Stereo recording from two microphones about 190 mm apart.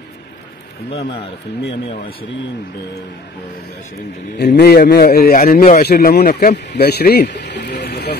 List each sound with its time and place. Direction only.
1.7 s speech: 30° left (ahead or behind)
4.4 s a man's voice: 60° left (ahead or behind)